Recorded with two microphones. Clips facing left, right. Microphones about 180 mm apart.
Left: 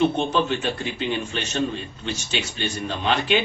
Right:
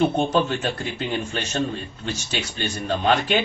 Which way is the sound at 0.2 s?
45° right (ahead or behind).